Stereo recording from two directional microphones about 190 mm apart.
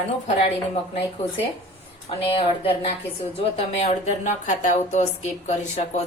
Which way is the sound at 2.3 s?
30° left (ahead or behind).